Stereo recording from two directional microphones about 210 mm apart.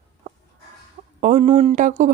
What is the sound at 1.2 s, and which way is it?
Speech, 35° right (ahead or behind).